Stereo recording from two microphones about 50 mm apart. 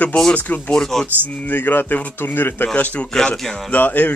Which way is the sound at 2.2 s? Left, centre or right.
Left.